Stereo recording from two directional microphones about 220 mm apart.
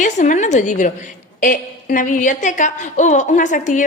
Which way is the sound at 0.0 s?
35° left (ahead or behind).